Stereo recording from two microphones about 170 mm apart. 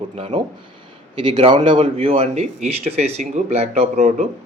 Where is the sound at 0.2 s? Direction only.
35° right (ahead or behind).